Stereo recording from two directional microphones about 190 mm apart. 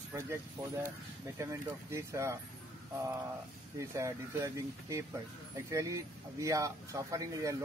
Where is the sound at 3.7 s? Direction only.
15° right (ahead or behind).